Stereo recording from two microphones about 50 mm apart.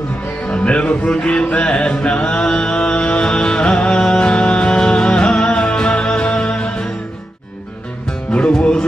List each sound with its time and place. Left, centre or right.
0.4 s music: left
8.1 s music: left